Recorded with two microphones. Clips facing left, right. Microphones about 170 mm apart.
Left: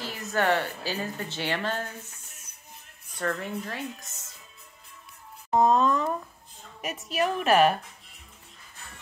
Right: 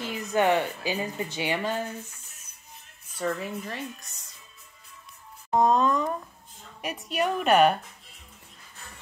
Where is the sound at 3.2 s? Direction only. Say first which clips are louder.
Right 1 dB; 5° right (ahead or behind).